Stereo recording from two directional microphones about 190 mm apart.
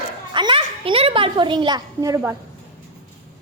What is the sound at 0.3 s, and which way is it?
A child's voice, 25° right (ahead or behind).